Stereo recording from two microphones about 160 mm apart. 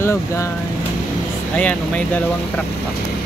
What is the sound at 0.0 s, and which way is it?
Speech, 15° left (ahead or behind).